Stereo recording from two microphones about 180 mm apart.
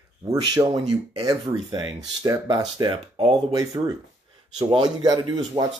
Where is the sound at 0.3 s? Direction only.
20° right (ahead or behind).